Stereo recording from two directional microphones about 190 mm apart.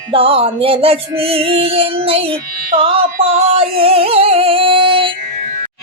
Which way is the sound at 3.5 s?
30° right (ahead or behind).